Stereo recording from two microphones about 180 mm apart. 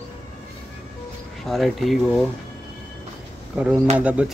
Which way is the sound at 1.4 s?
Centre (ahead or behind).